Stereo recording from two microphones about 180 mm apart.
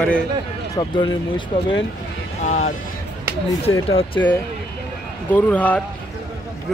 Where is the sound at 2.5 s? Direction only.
40° left (ahead or behind).